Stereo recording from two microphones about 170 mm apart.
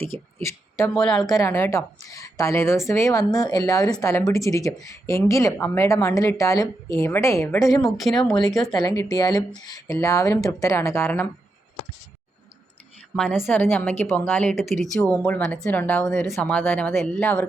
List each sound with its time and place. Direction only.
0.3 s a sound: 15° left (ahead or behind)
0.9 s speech: 5° left (ahead or behind)
1.3 s speech: 15° left (ahead or behind)
7.8 s speech: centre (ahead or behind)
8.7 s speech: 20° left (ahead or behind)
13.1 s speech: centre (ahead or behind)